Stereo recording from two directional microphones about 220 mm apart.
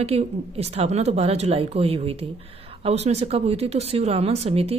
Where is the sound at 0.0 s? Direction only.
30° right (ahead or behind).